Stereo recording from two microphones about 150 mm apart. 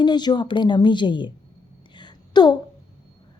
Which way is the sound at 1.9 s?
30° left (ahead or behind).